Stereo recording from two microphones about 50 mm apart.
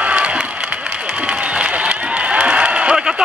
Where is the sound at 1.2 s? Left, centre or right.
Right.